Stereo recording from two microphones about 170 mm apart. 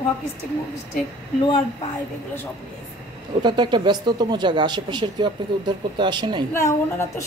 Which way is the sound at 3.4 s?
25° right (ahead or behind).